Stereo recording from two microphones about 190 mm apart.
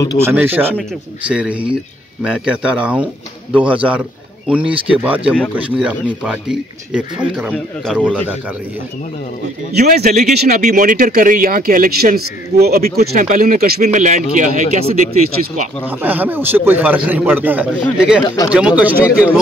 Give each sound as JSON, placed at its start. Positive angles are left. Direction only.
{"t": 0.2, "sound": "a man's voice", "side_deg": -10}
{"t": 9.8, "sound": "speech", "side_deg": -50}
{"t": 10.3, "sound": "speech", "side_deg": -55}
{"t": 10.6, "sound": "speech", "side_deg": -45}
{"t": 13.8, "sound": "speech", "side_deg": -40}
{"t": 16.0, "sound": "a man's voice", "side_deg": -10}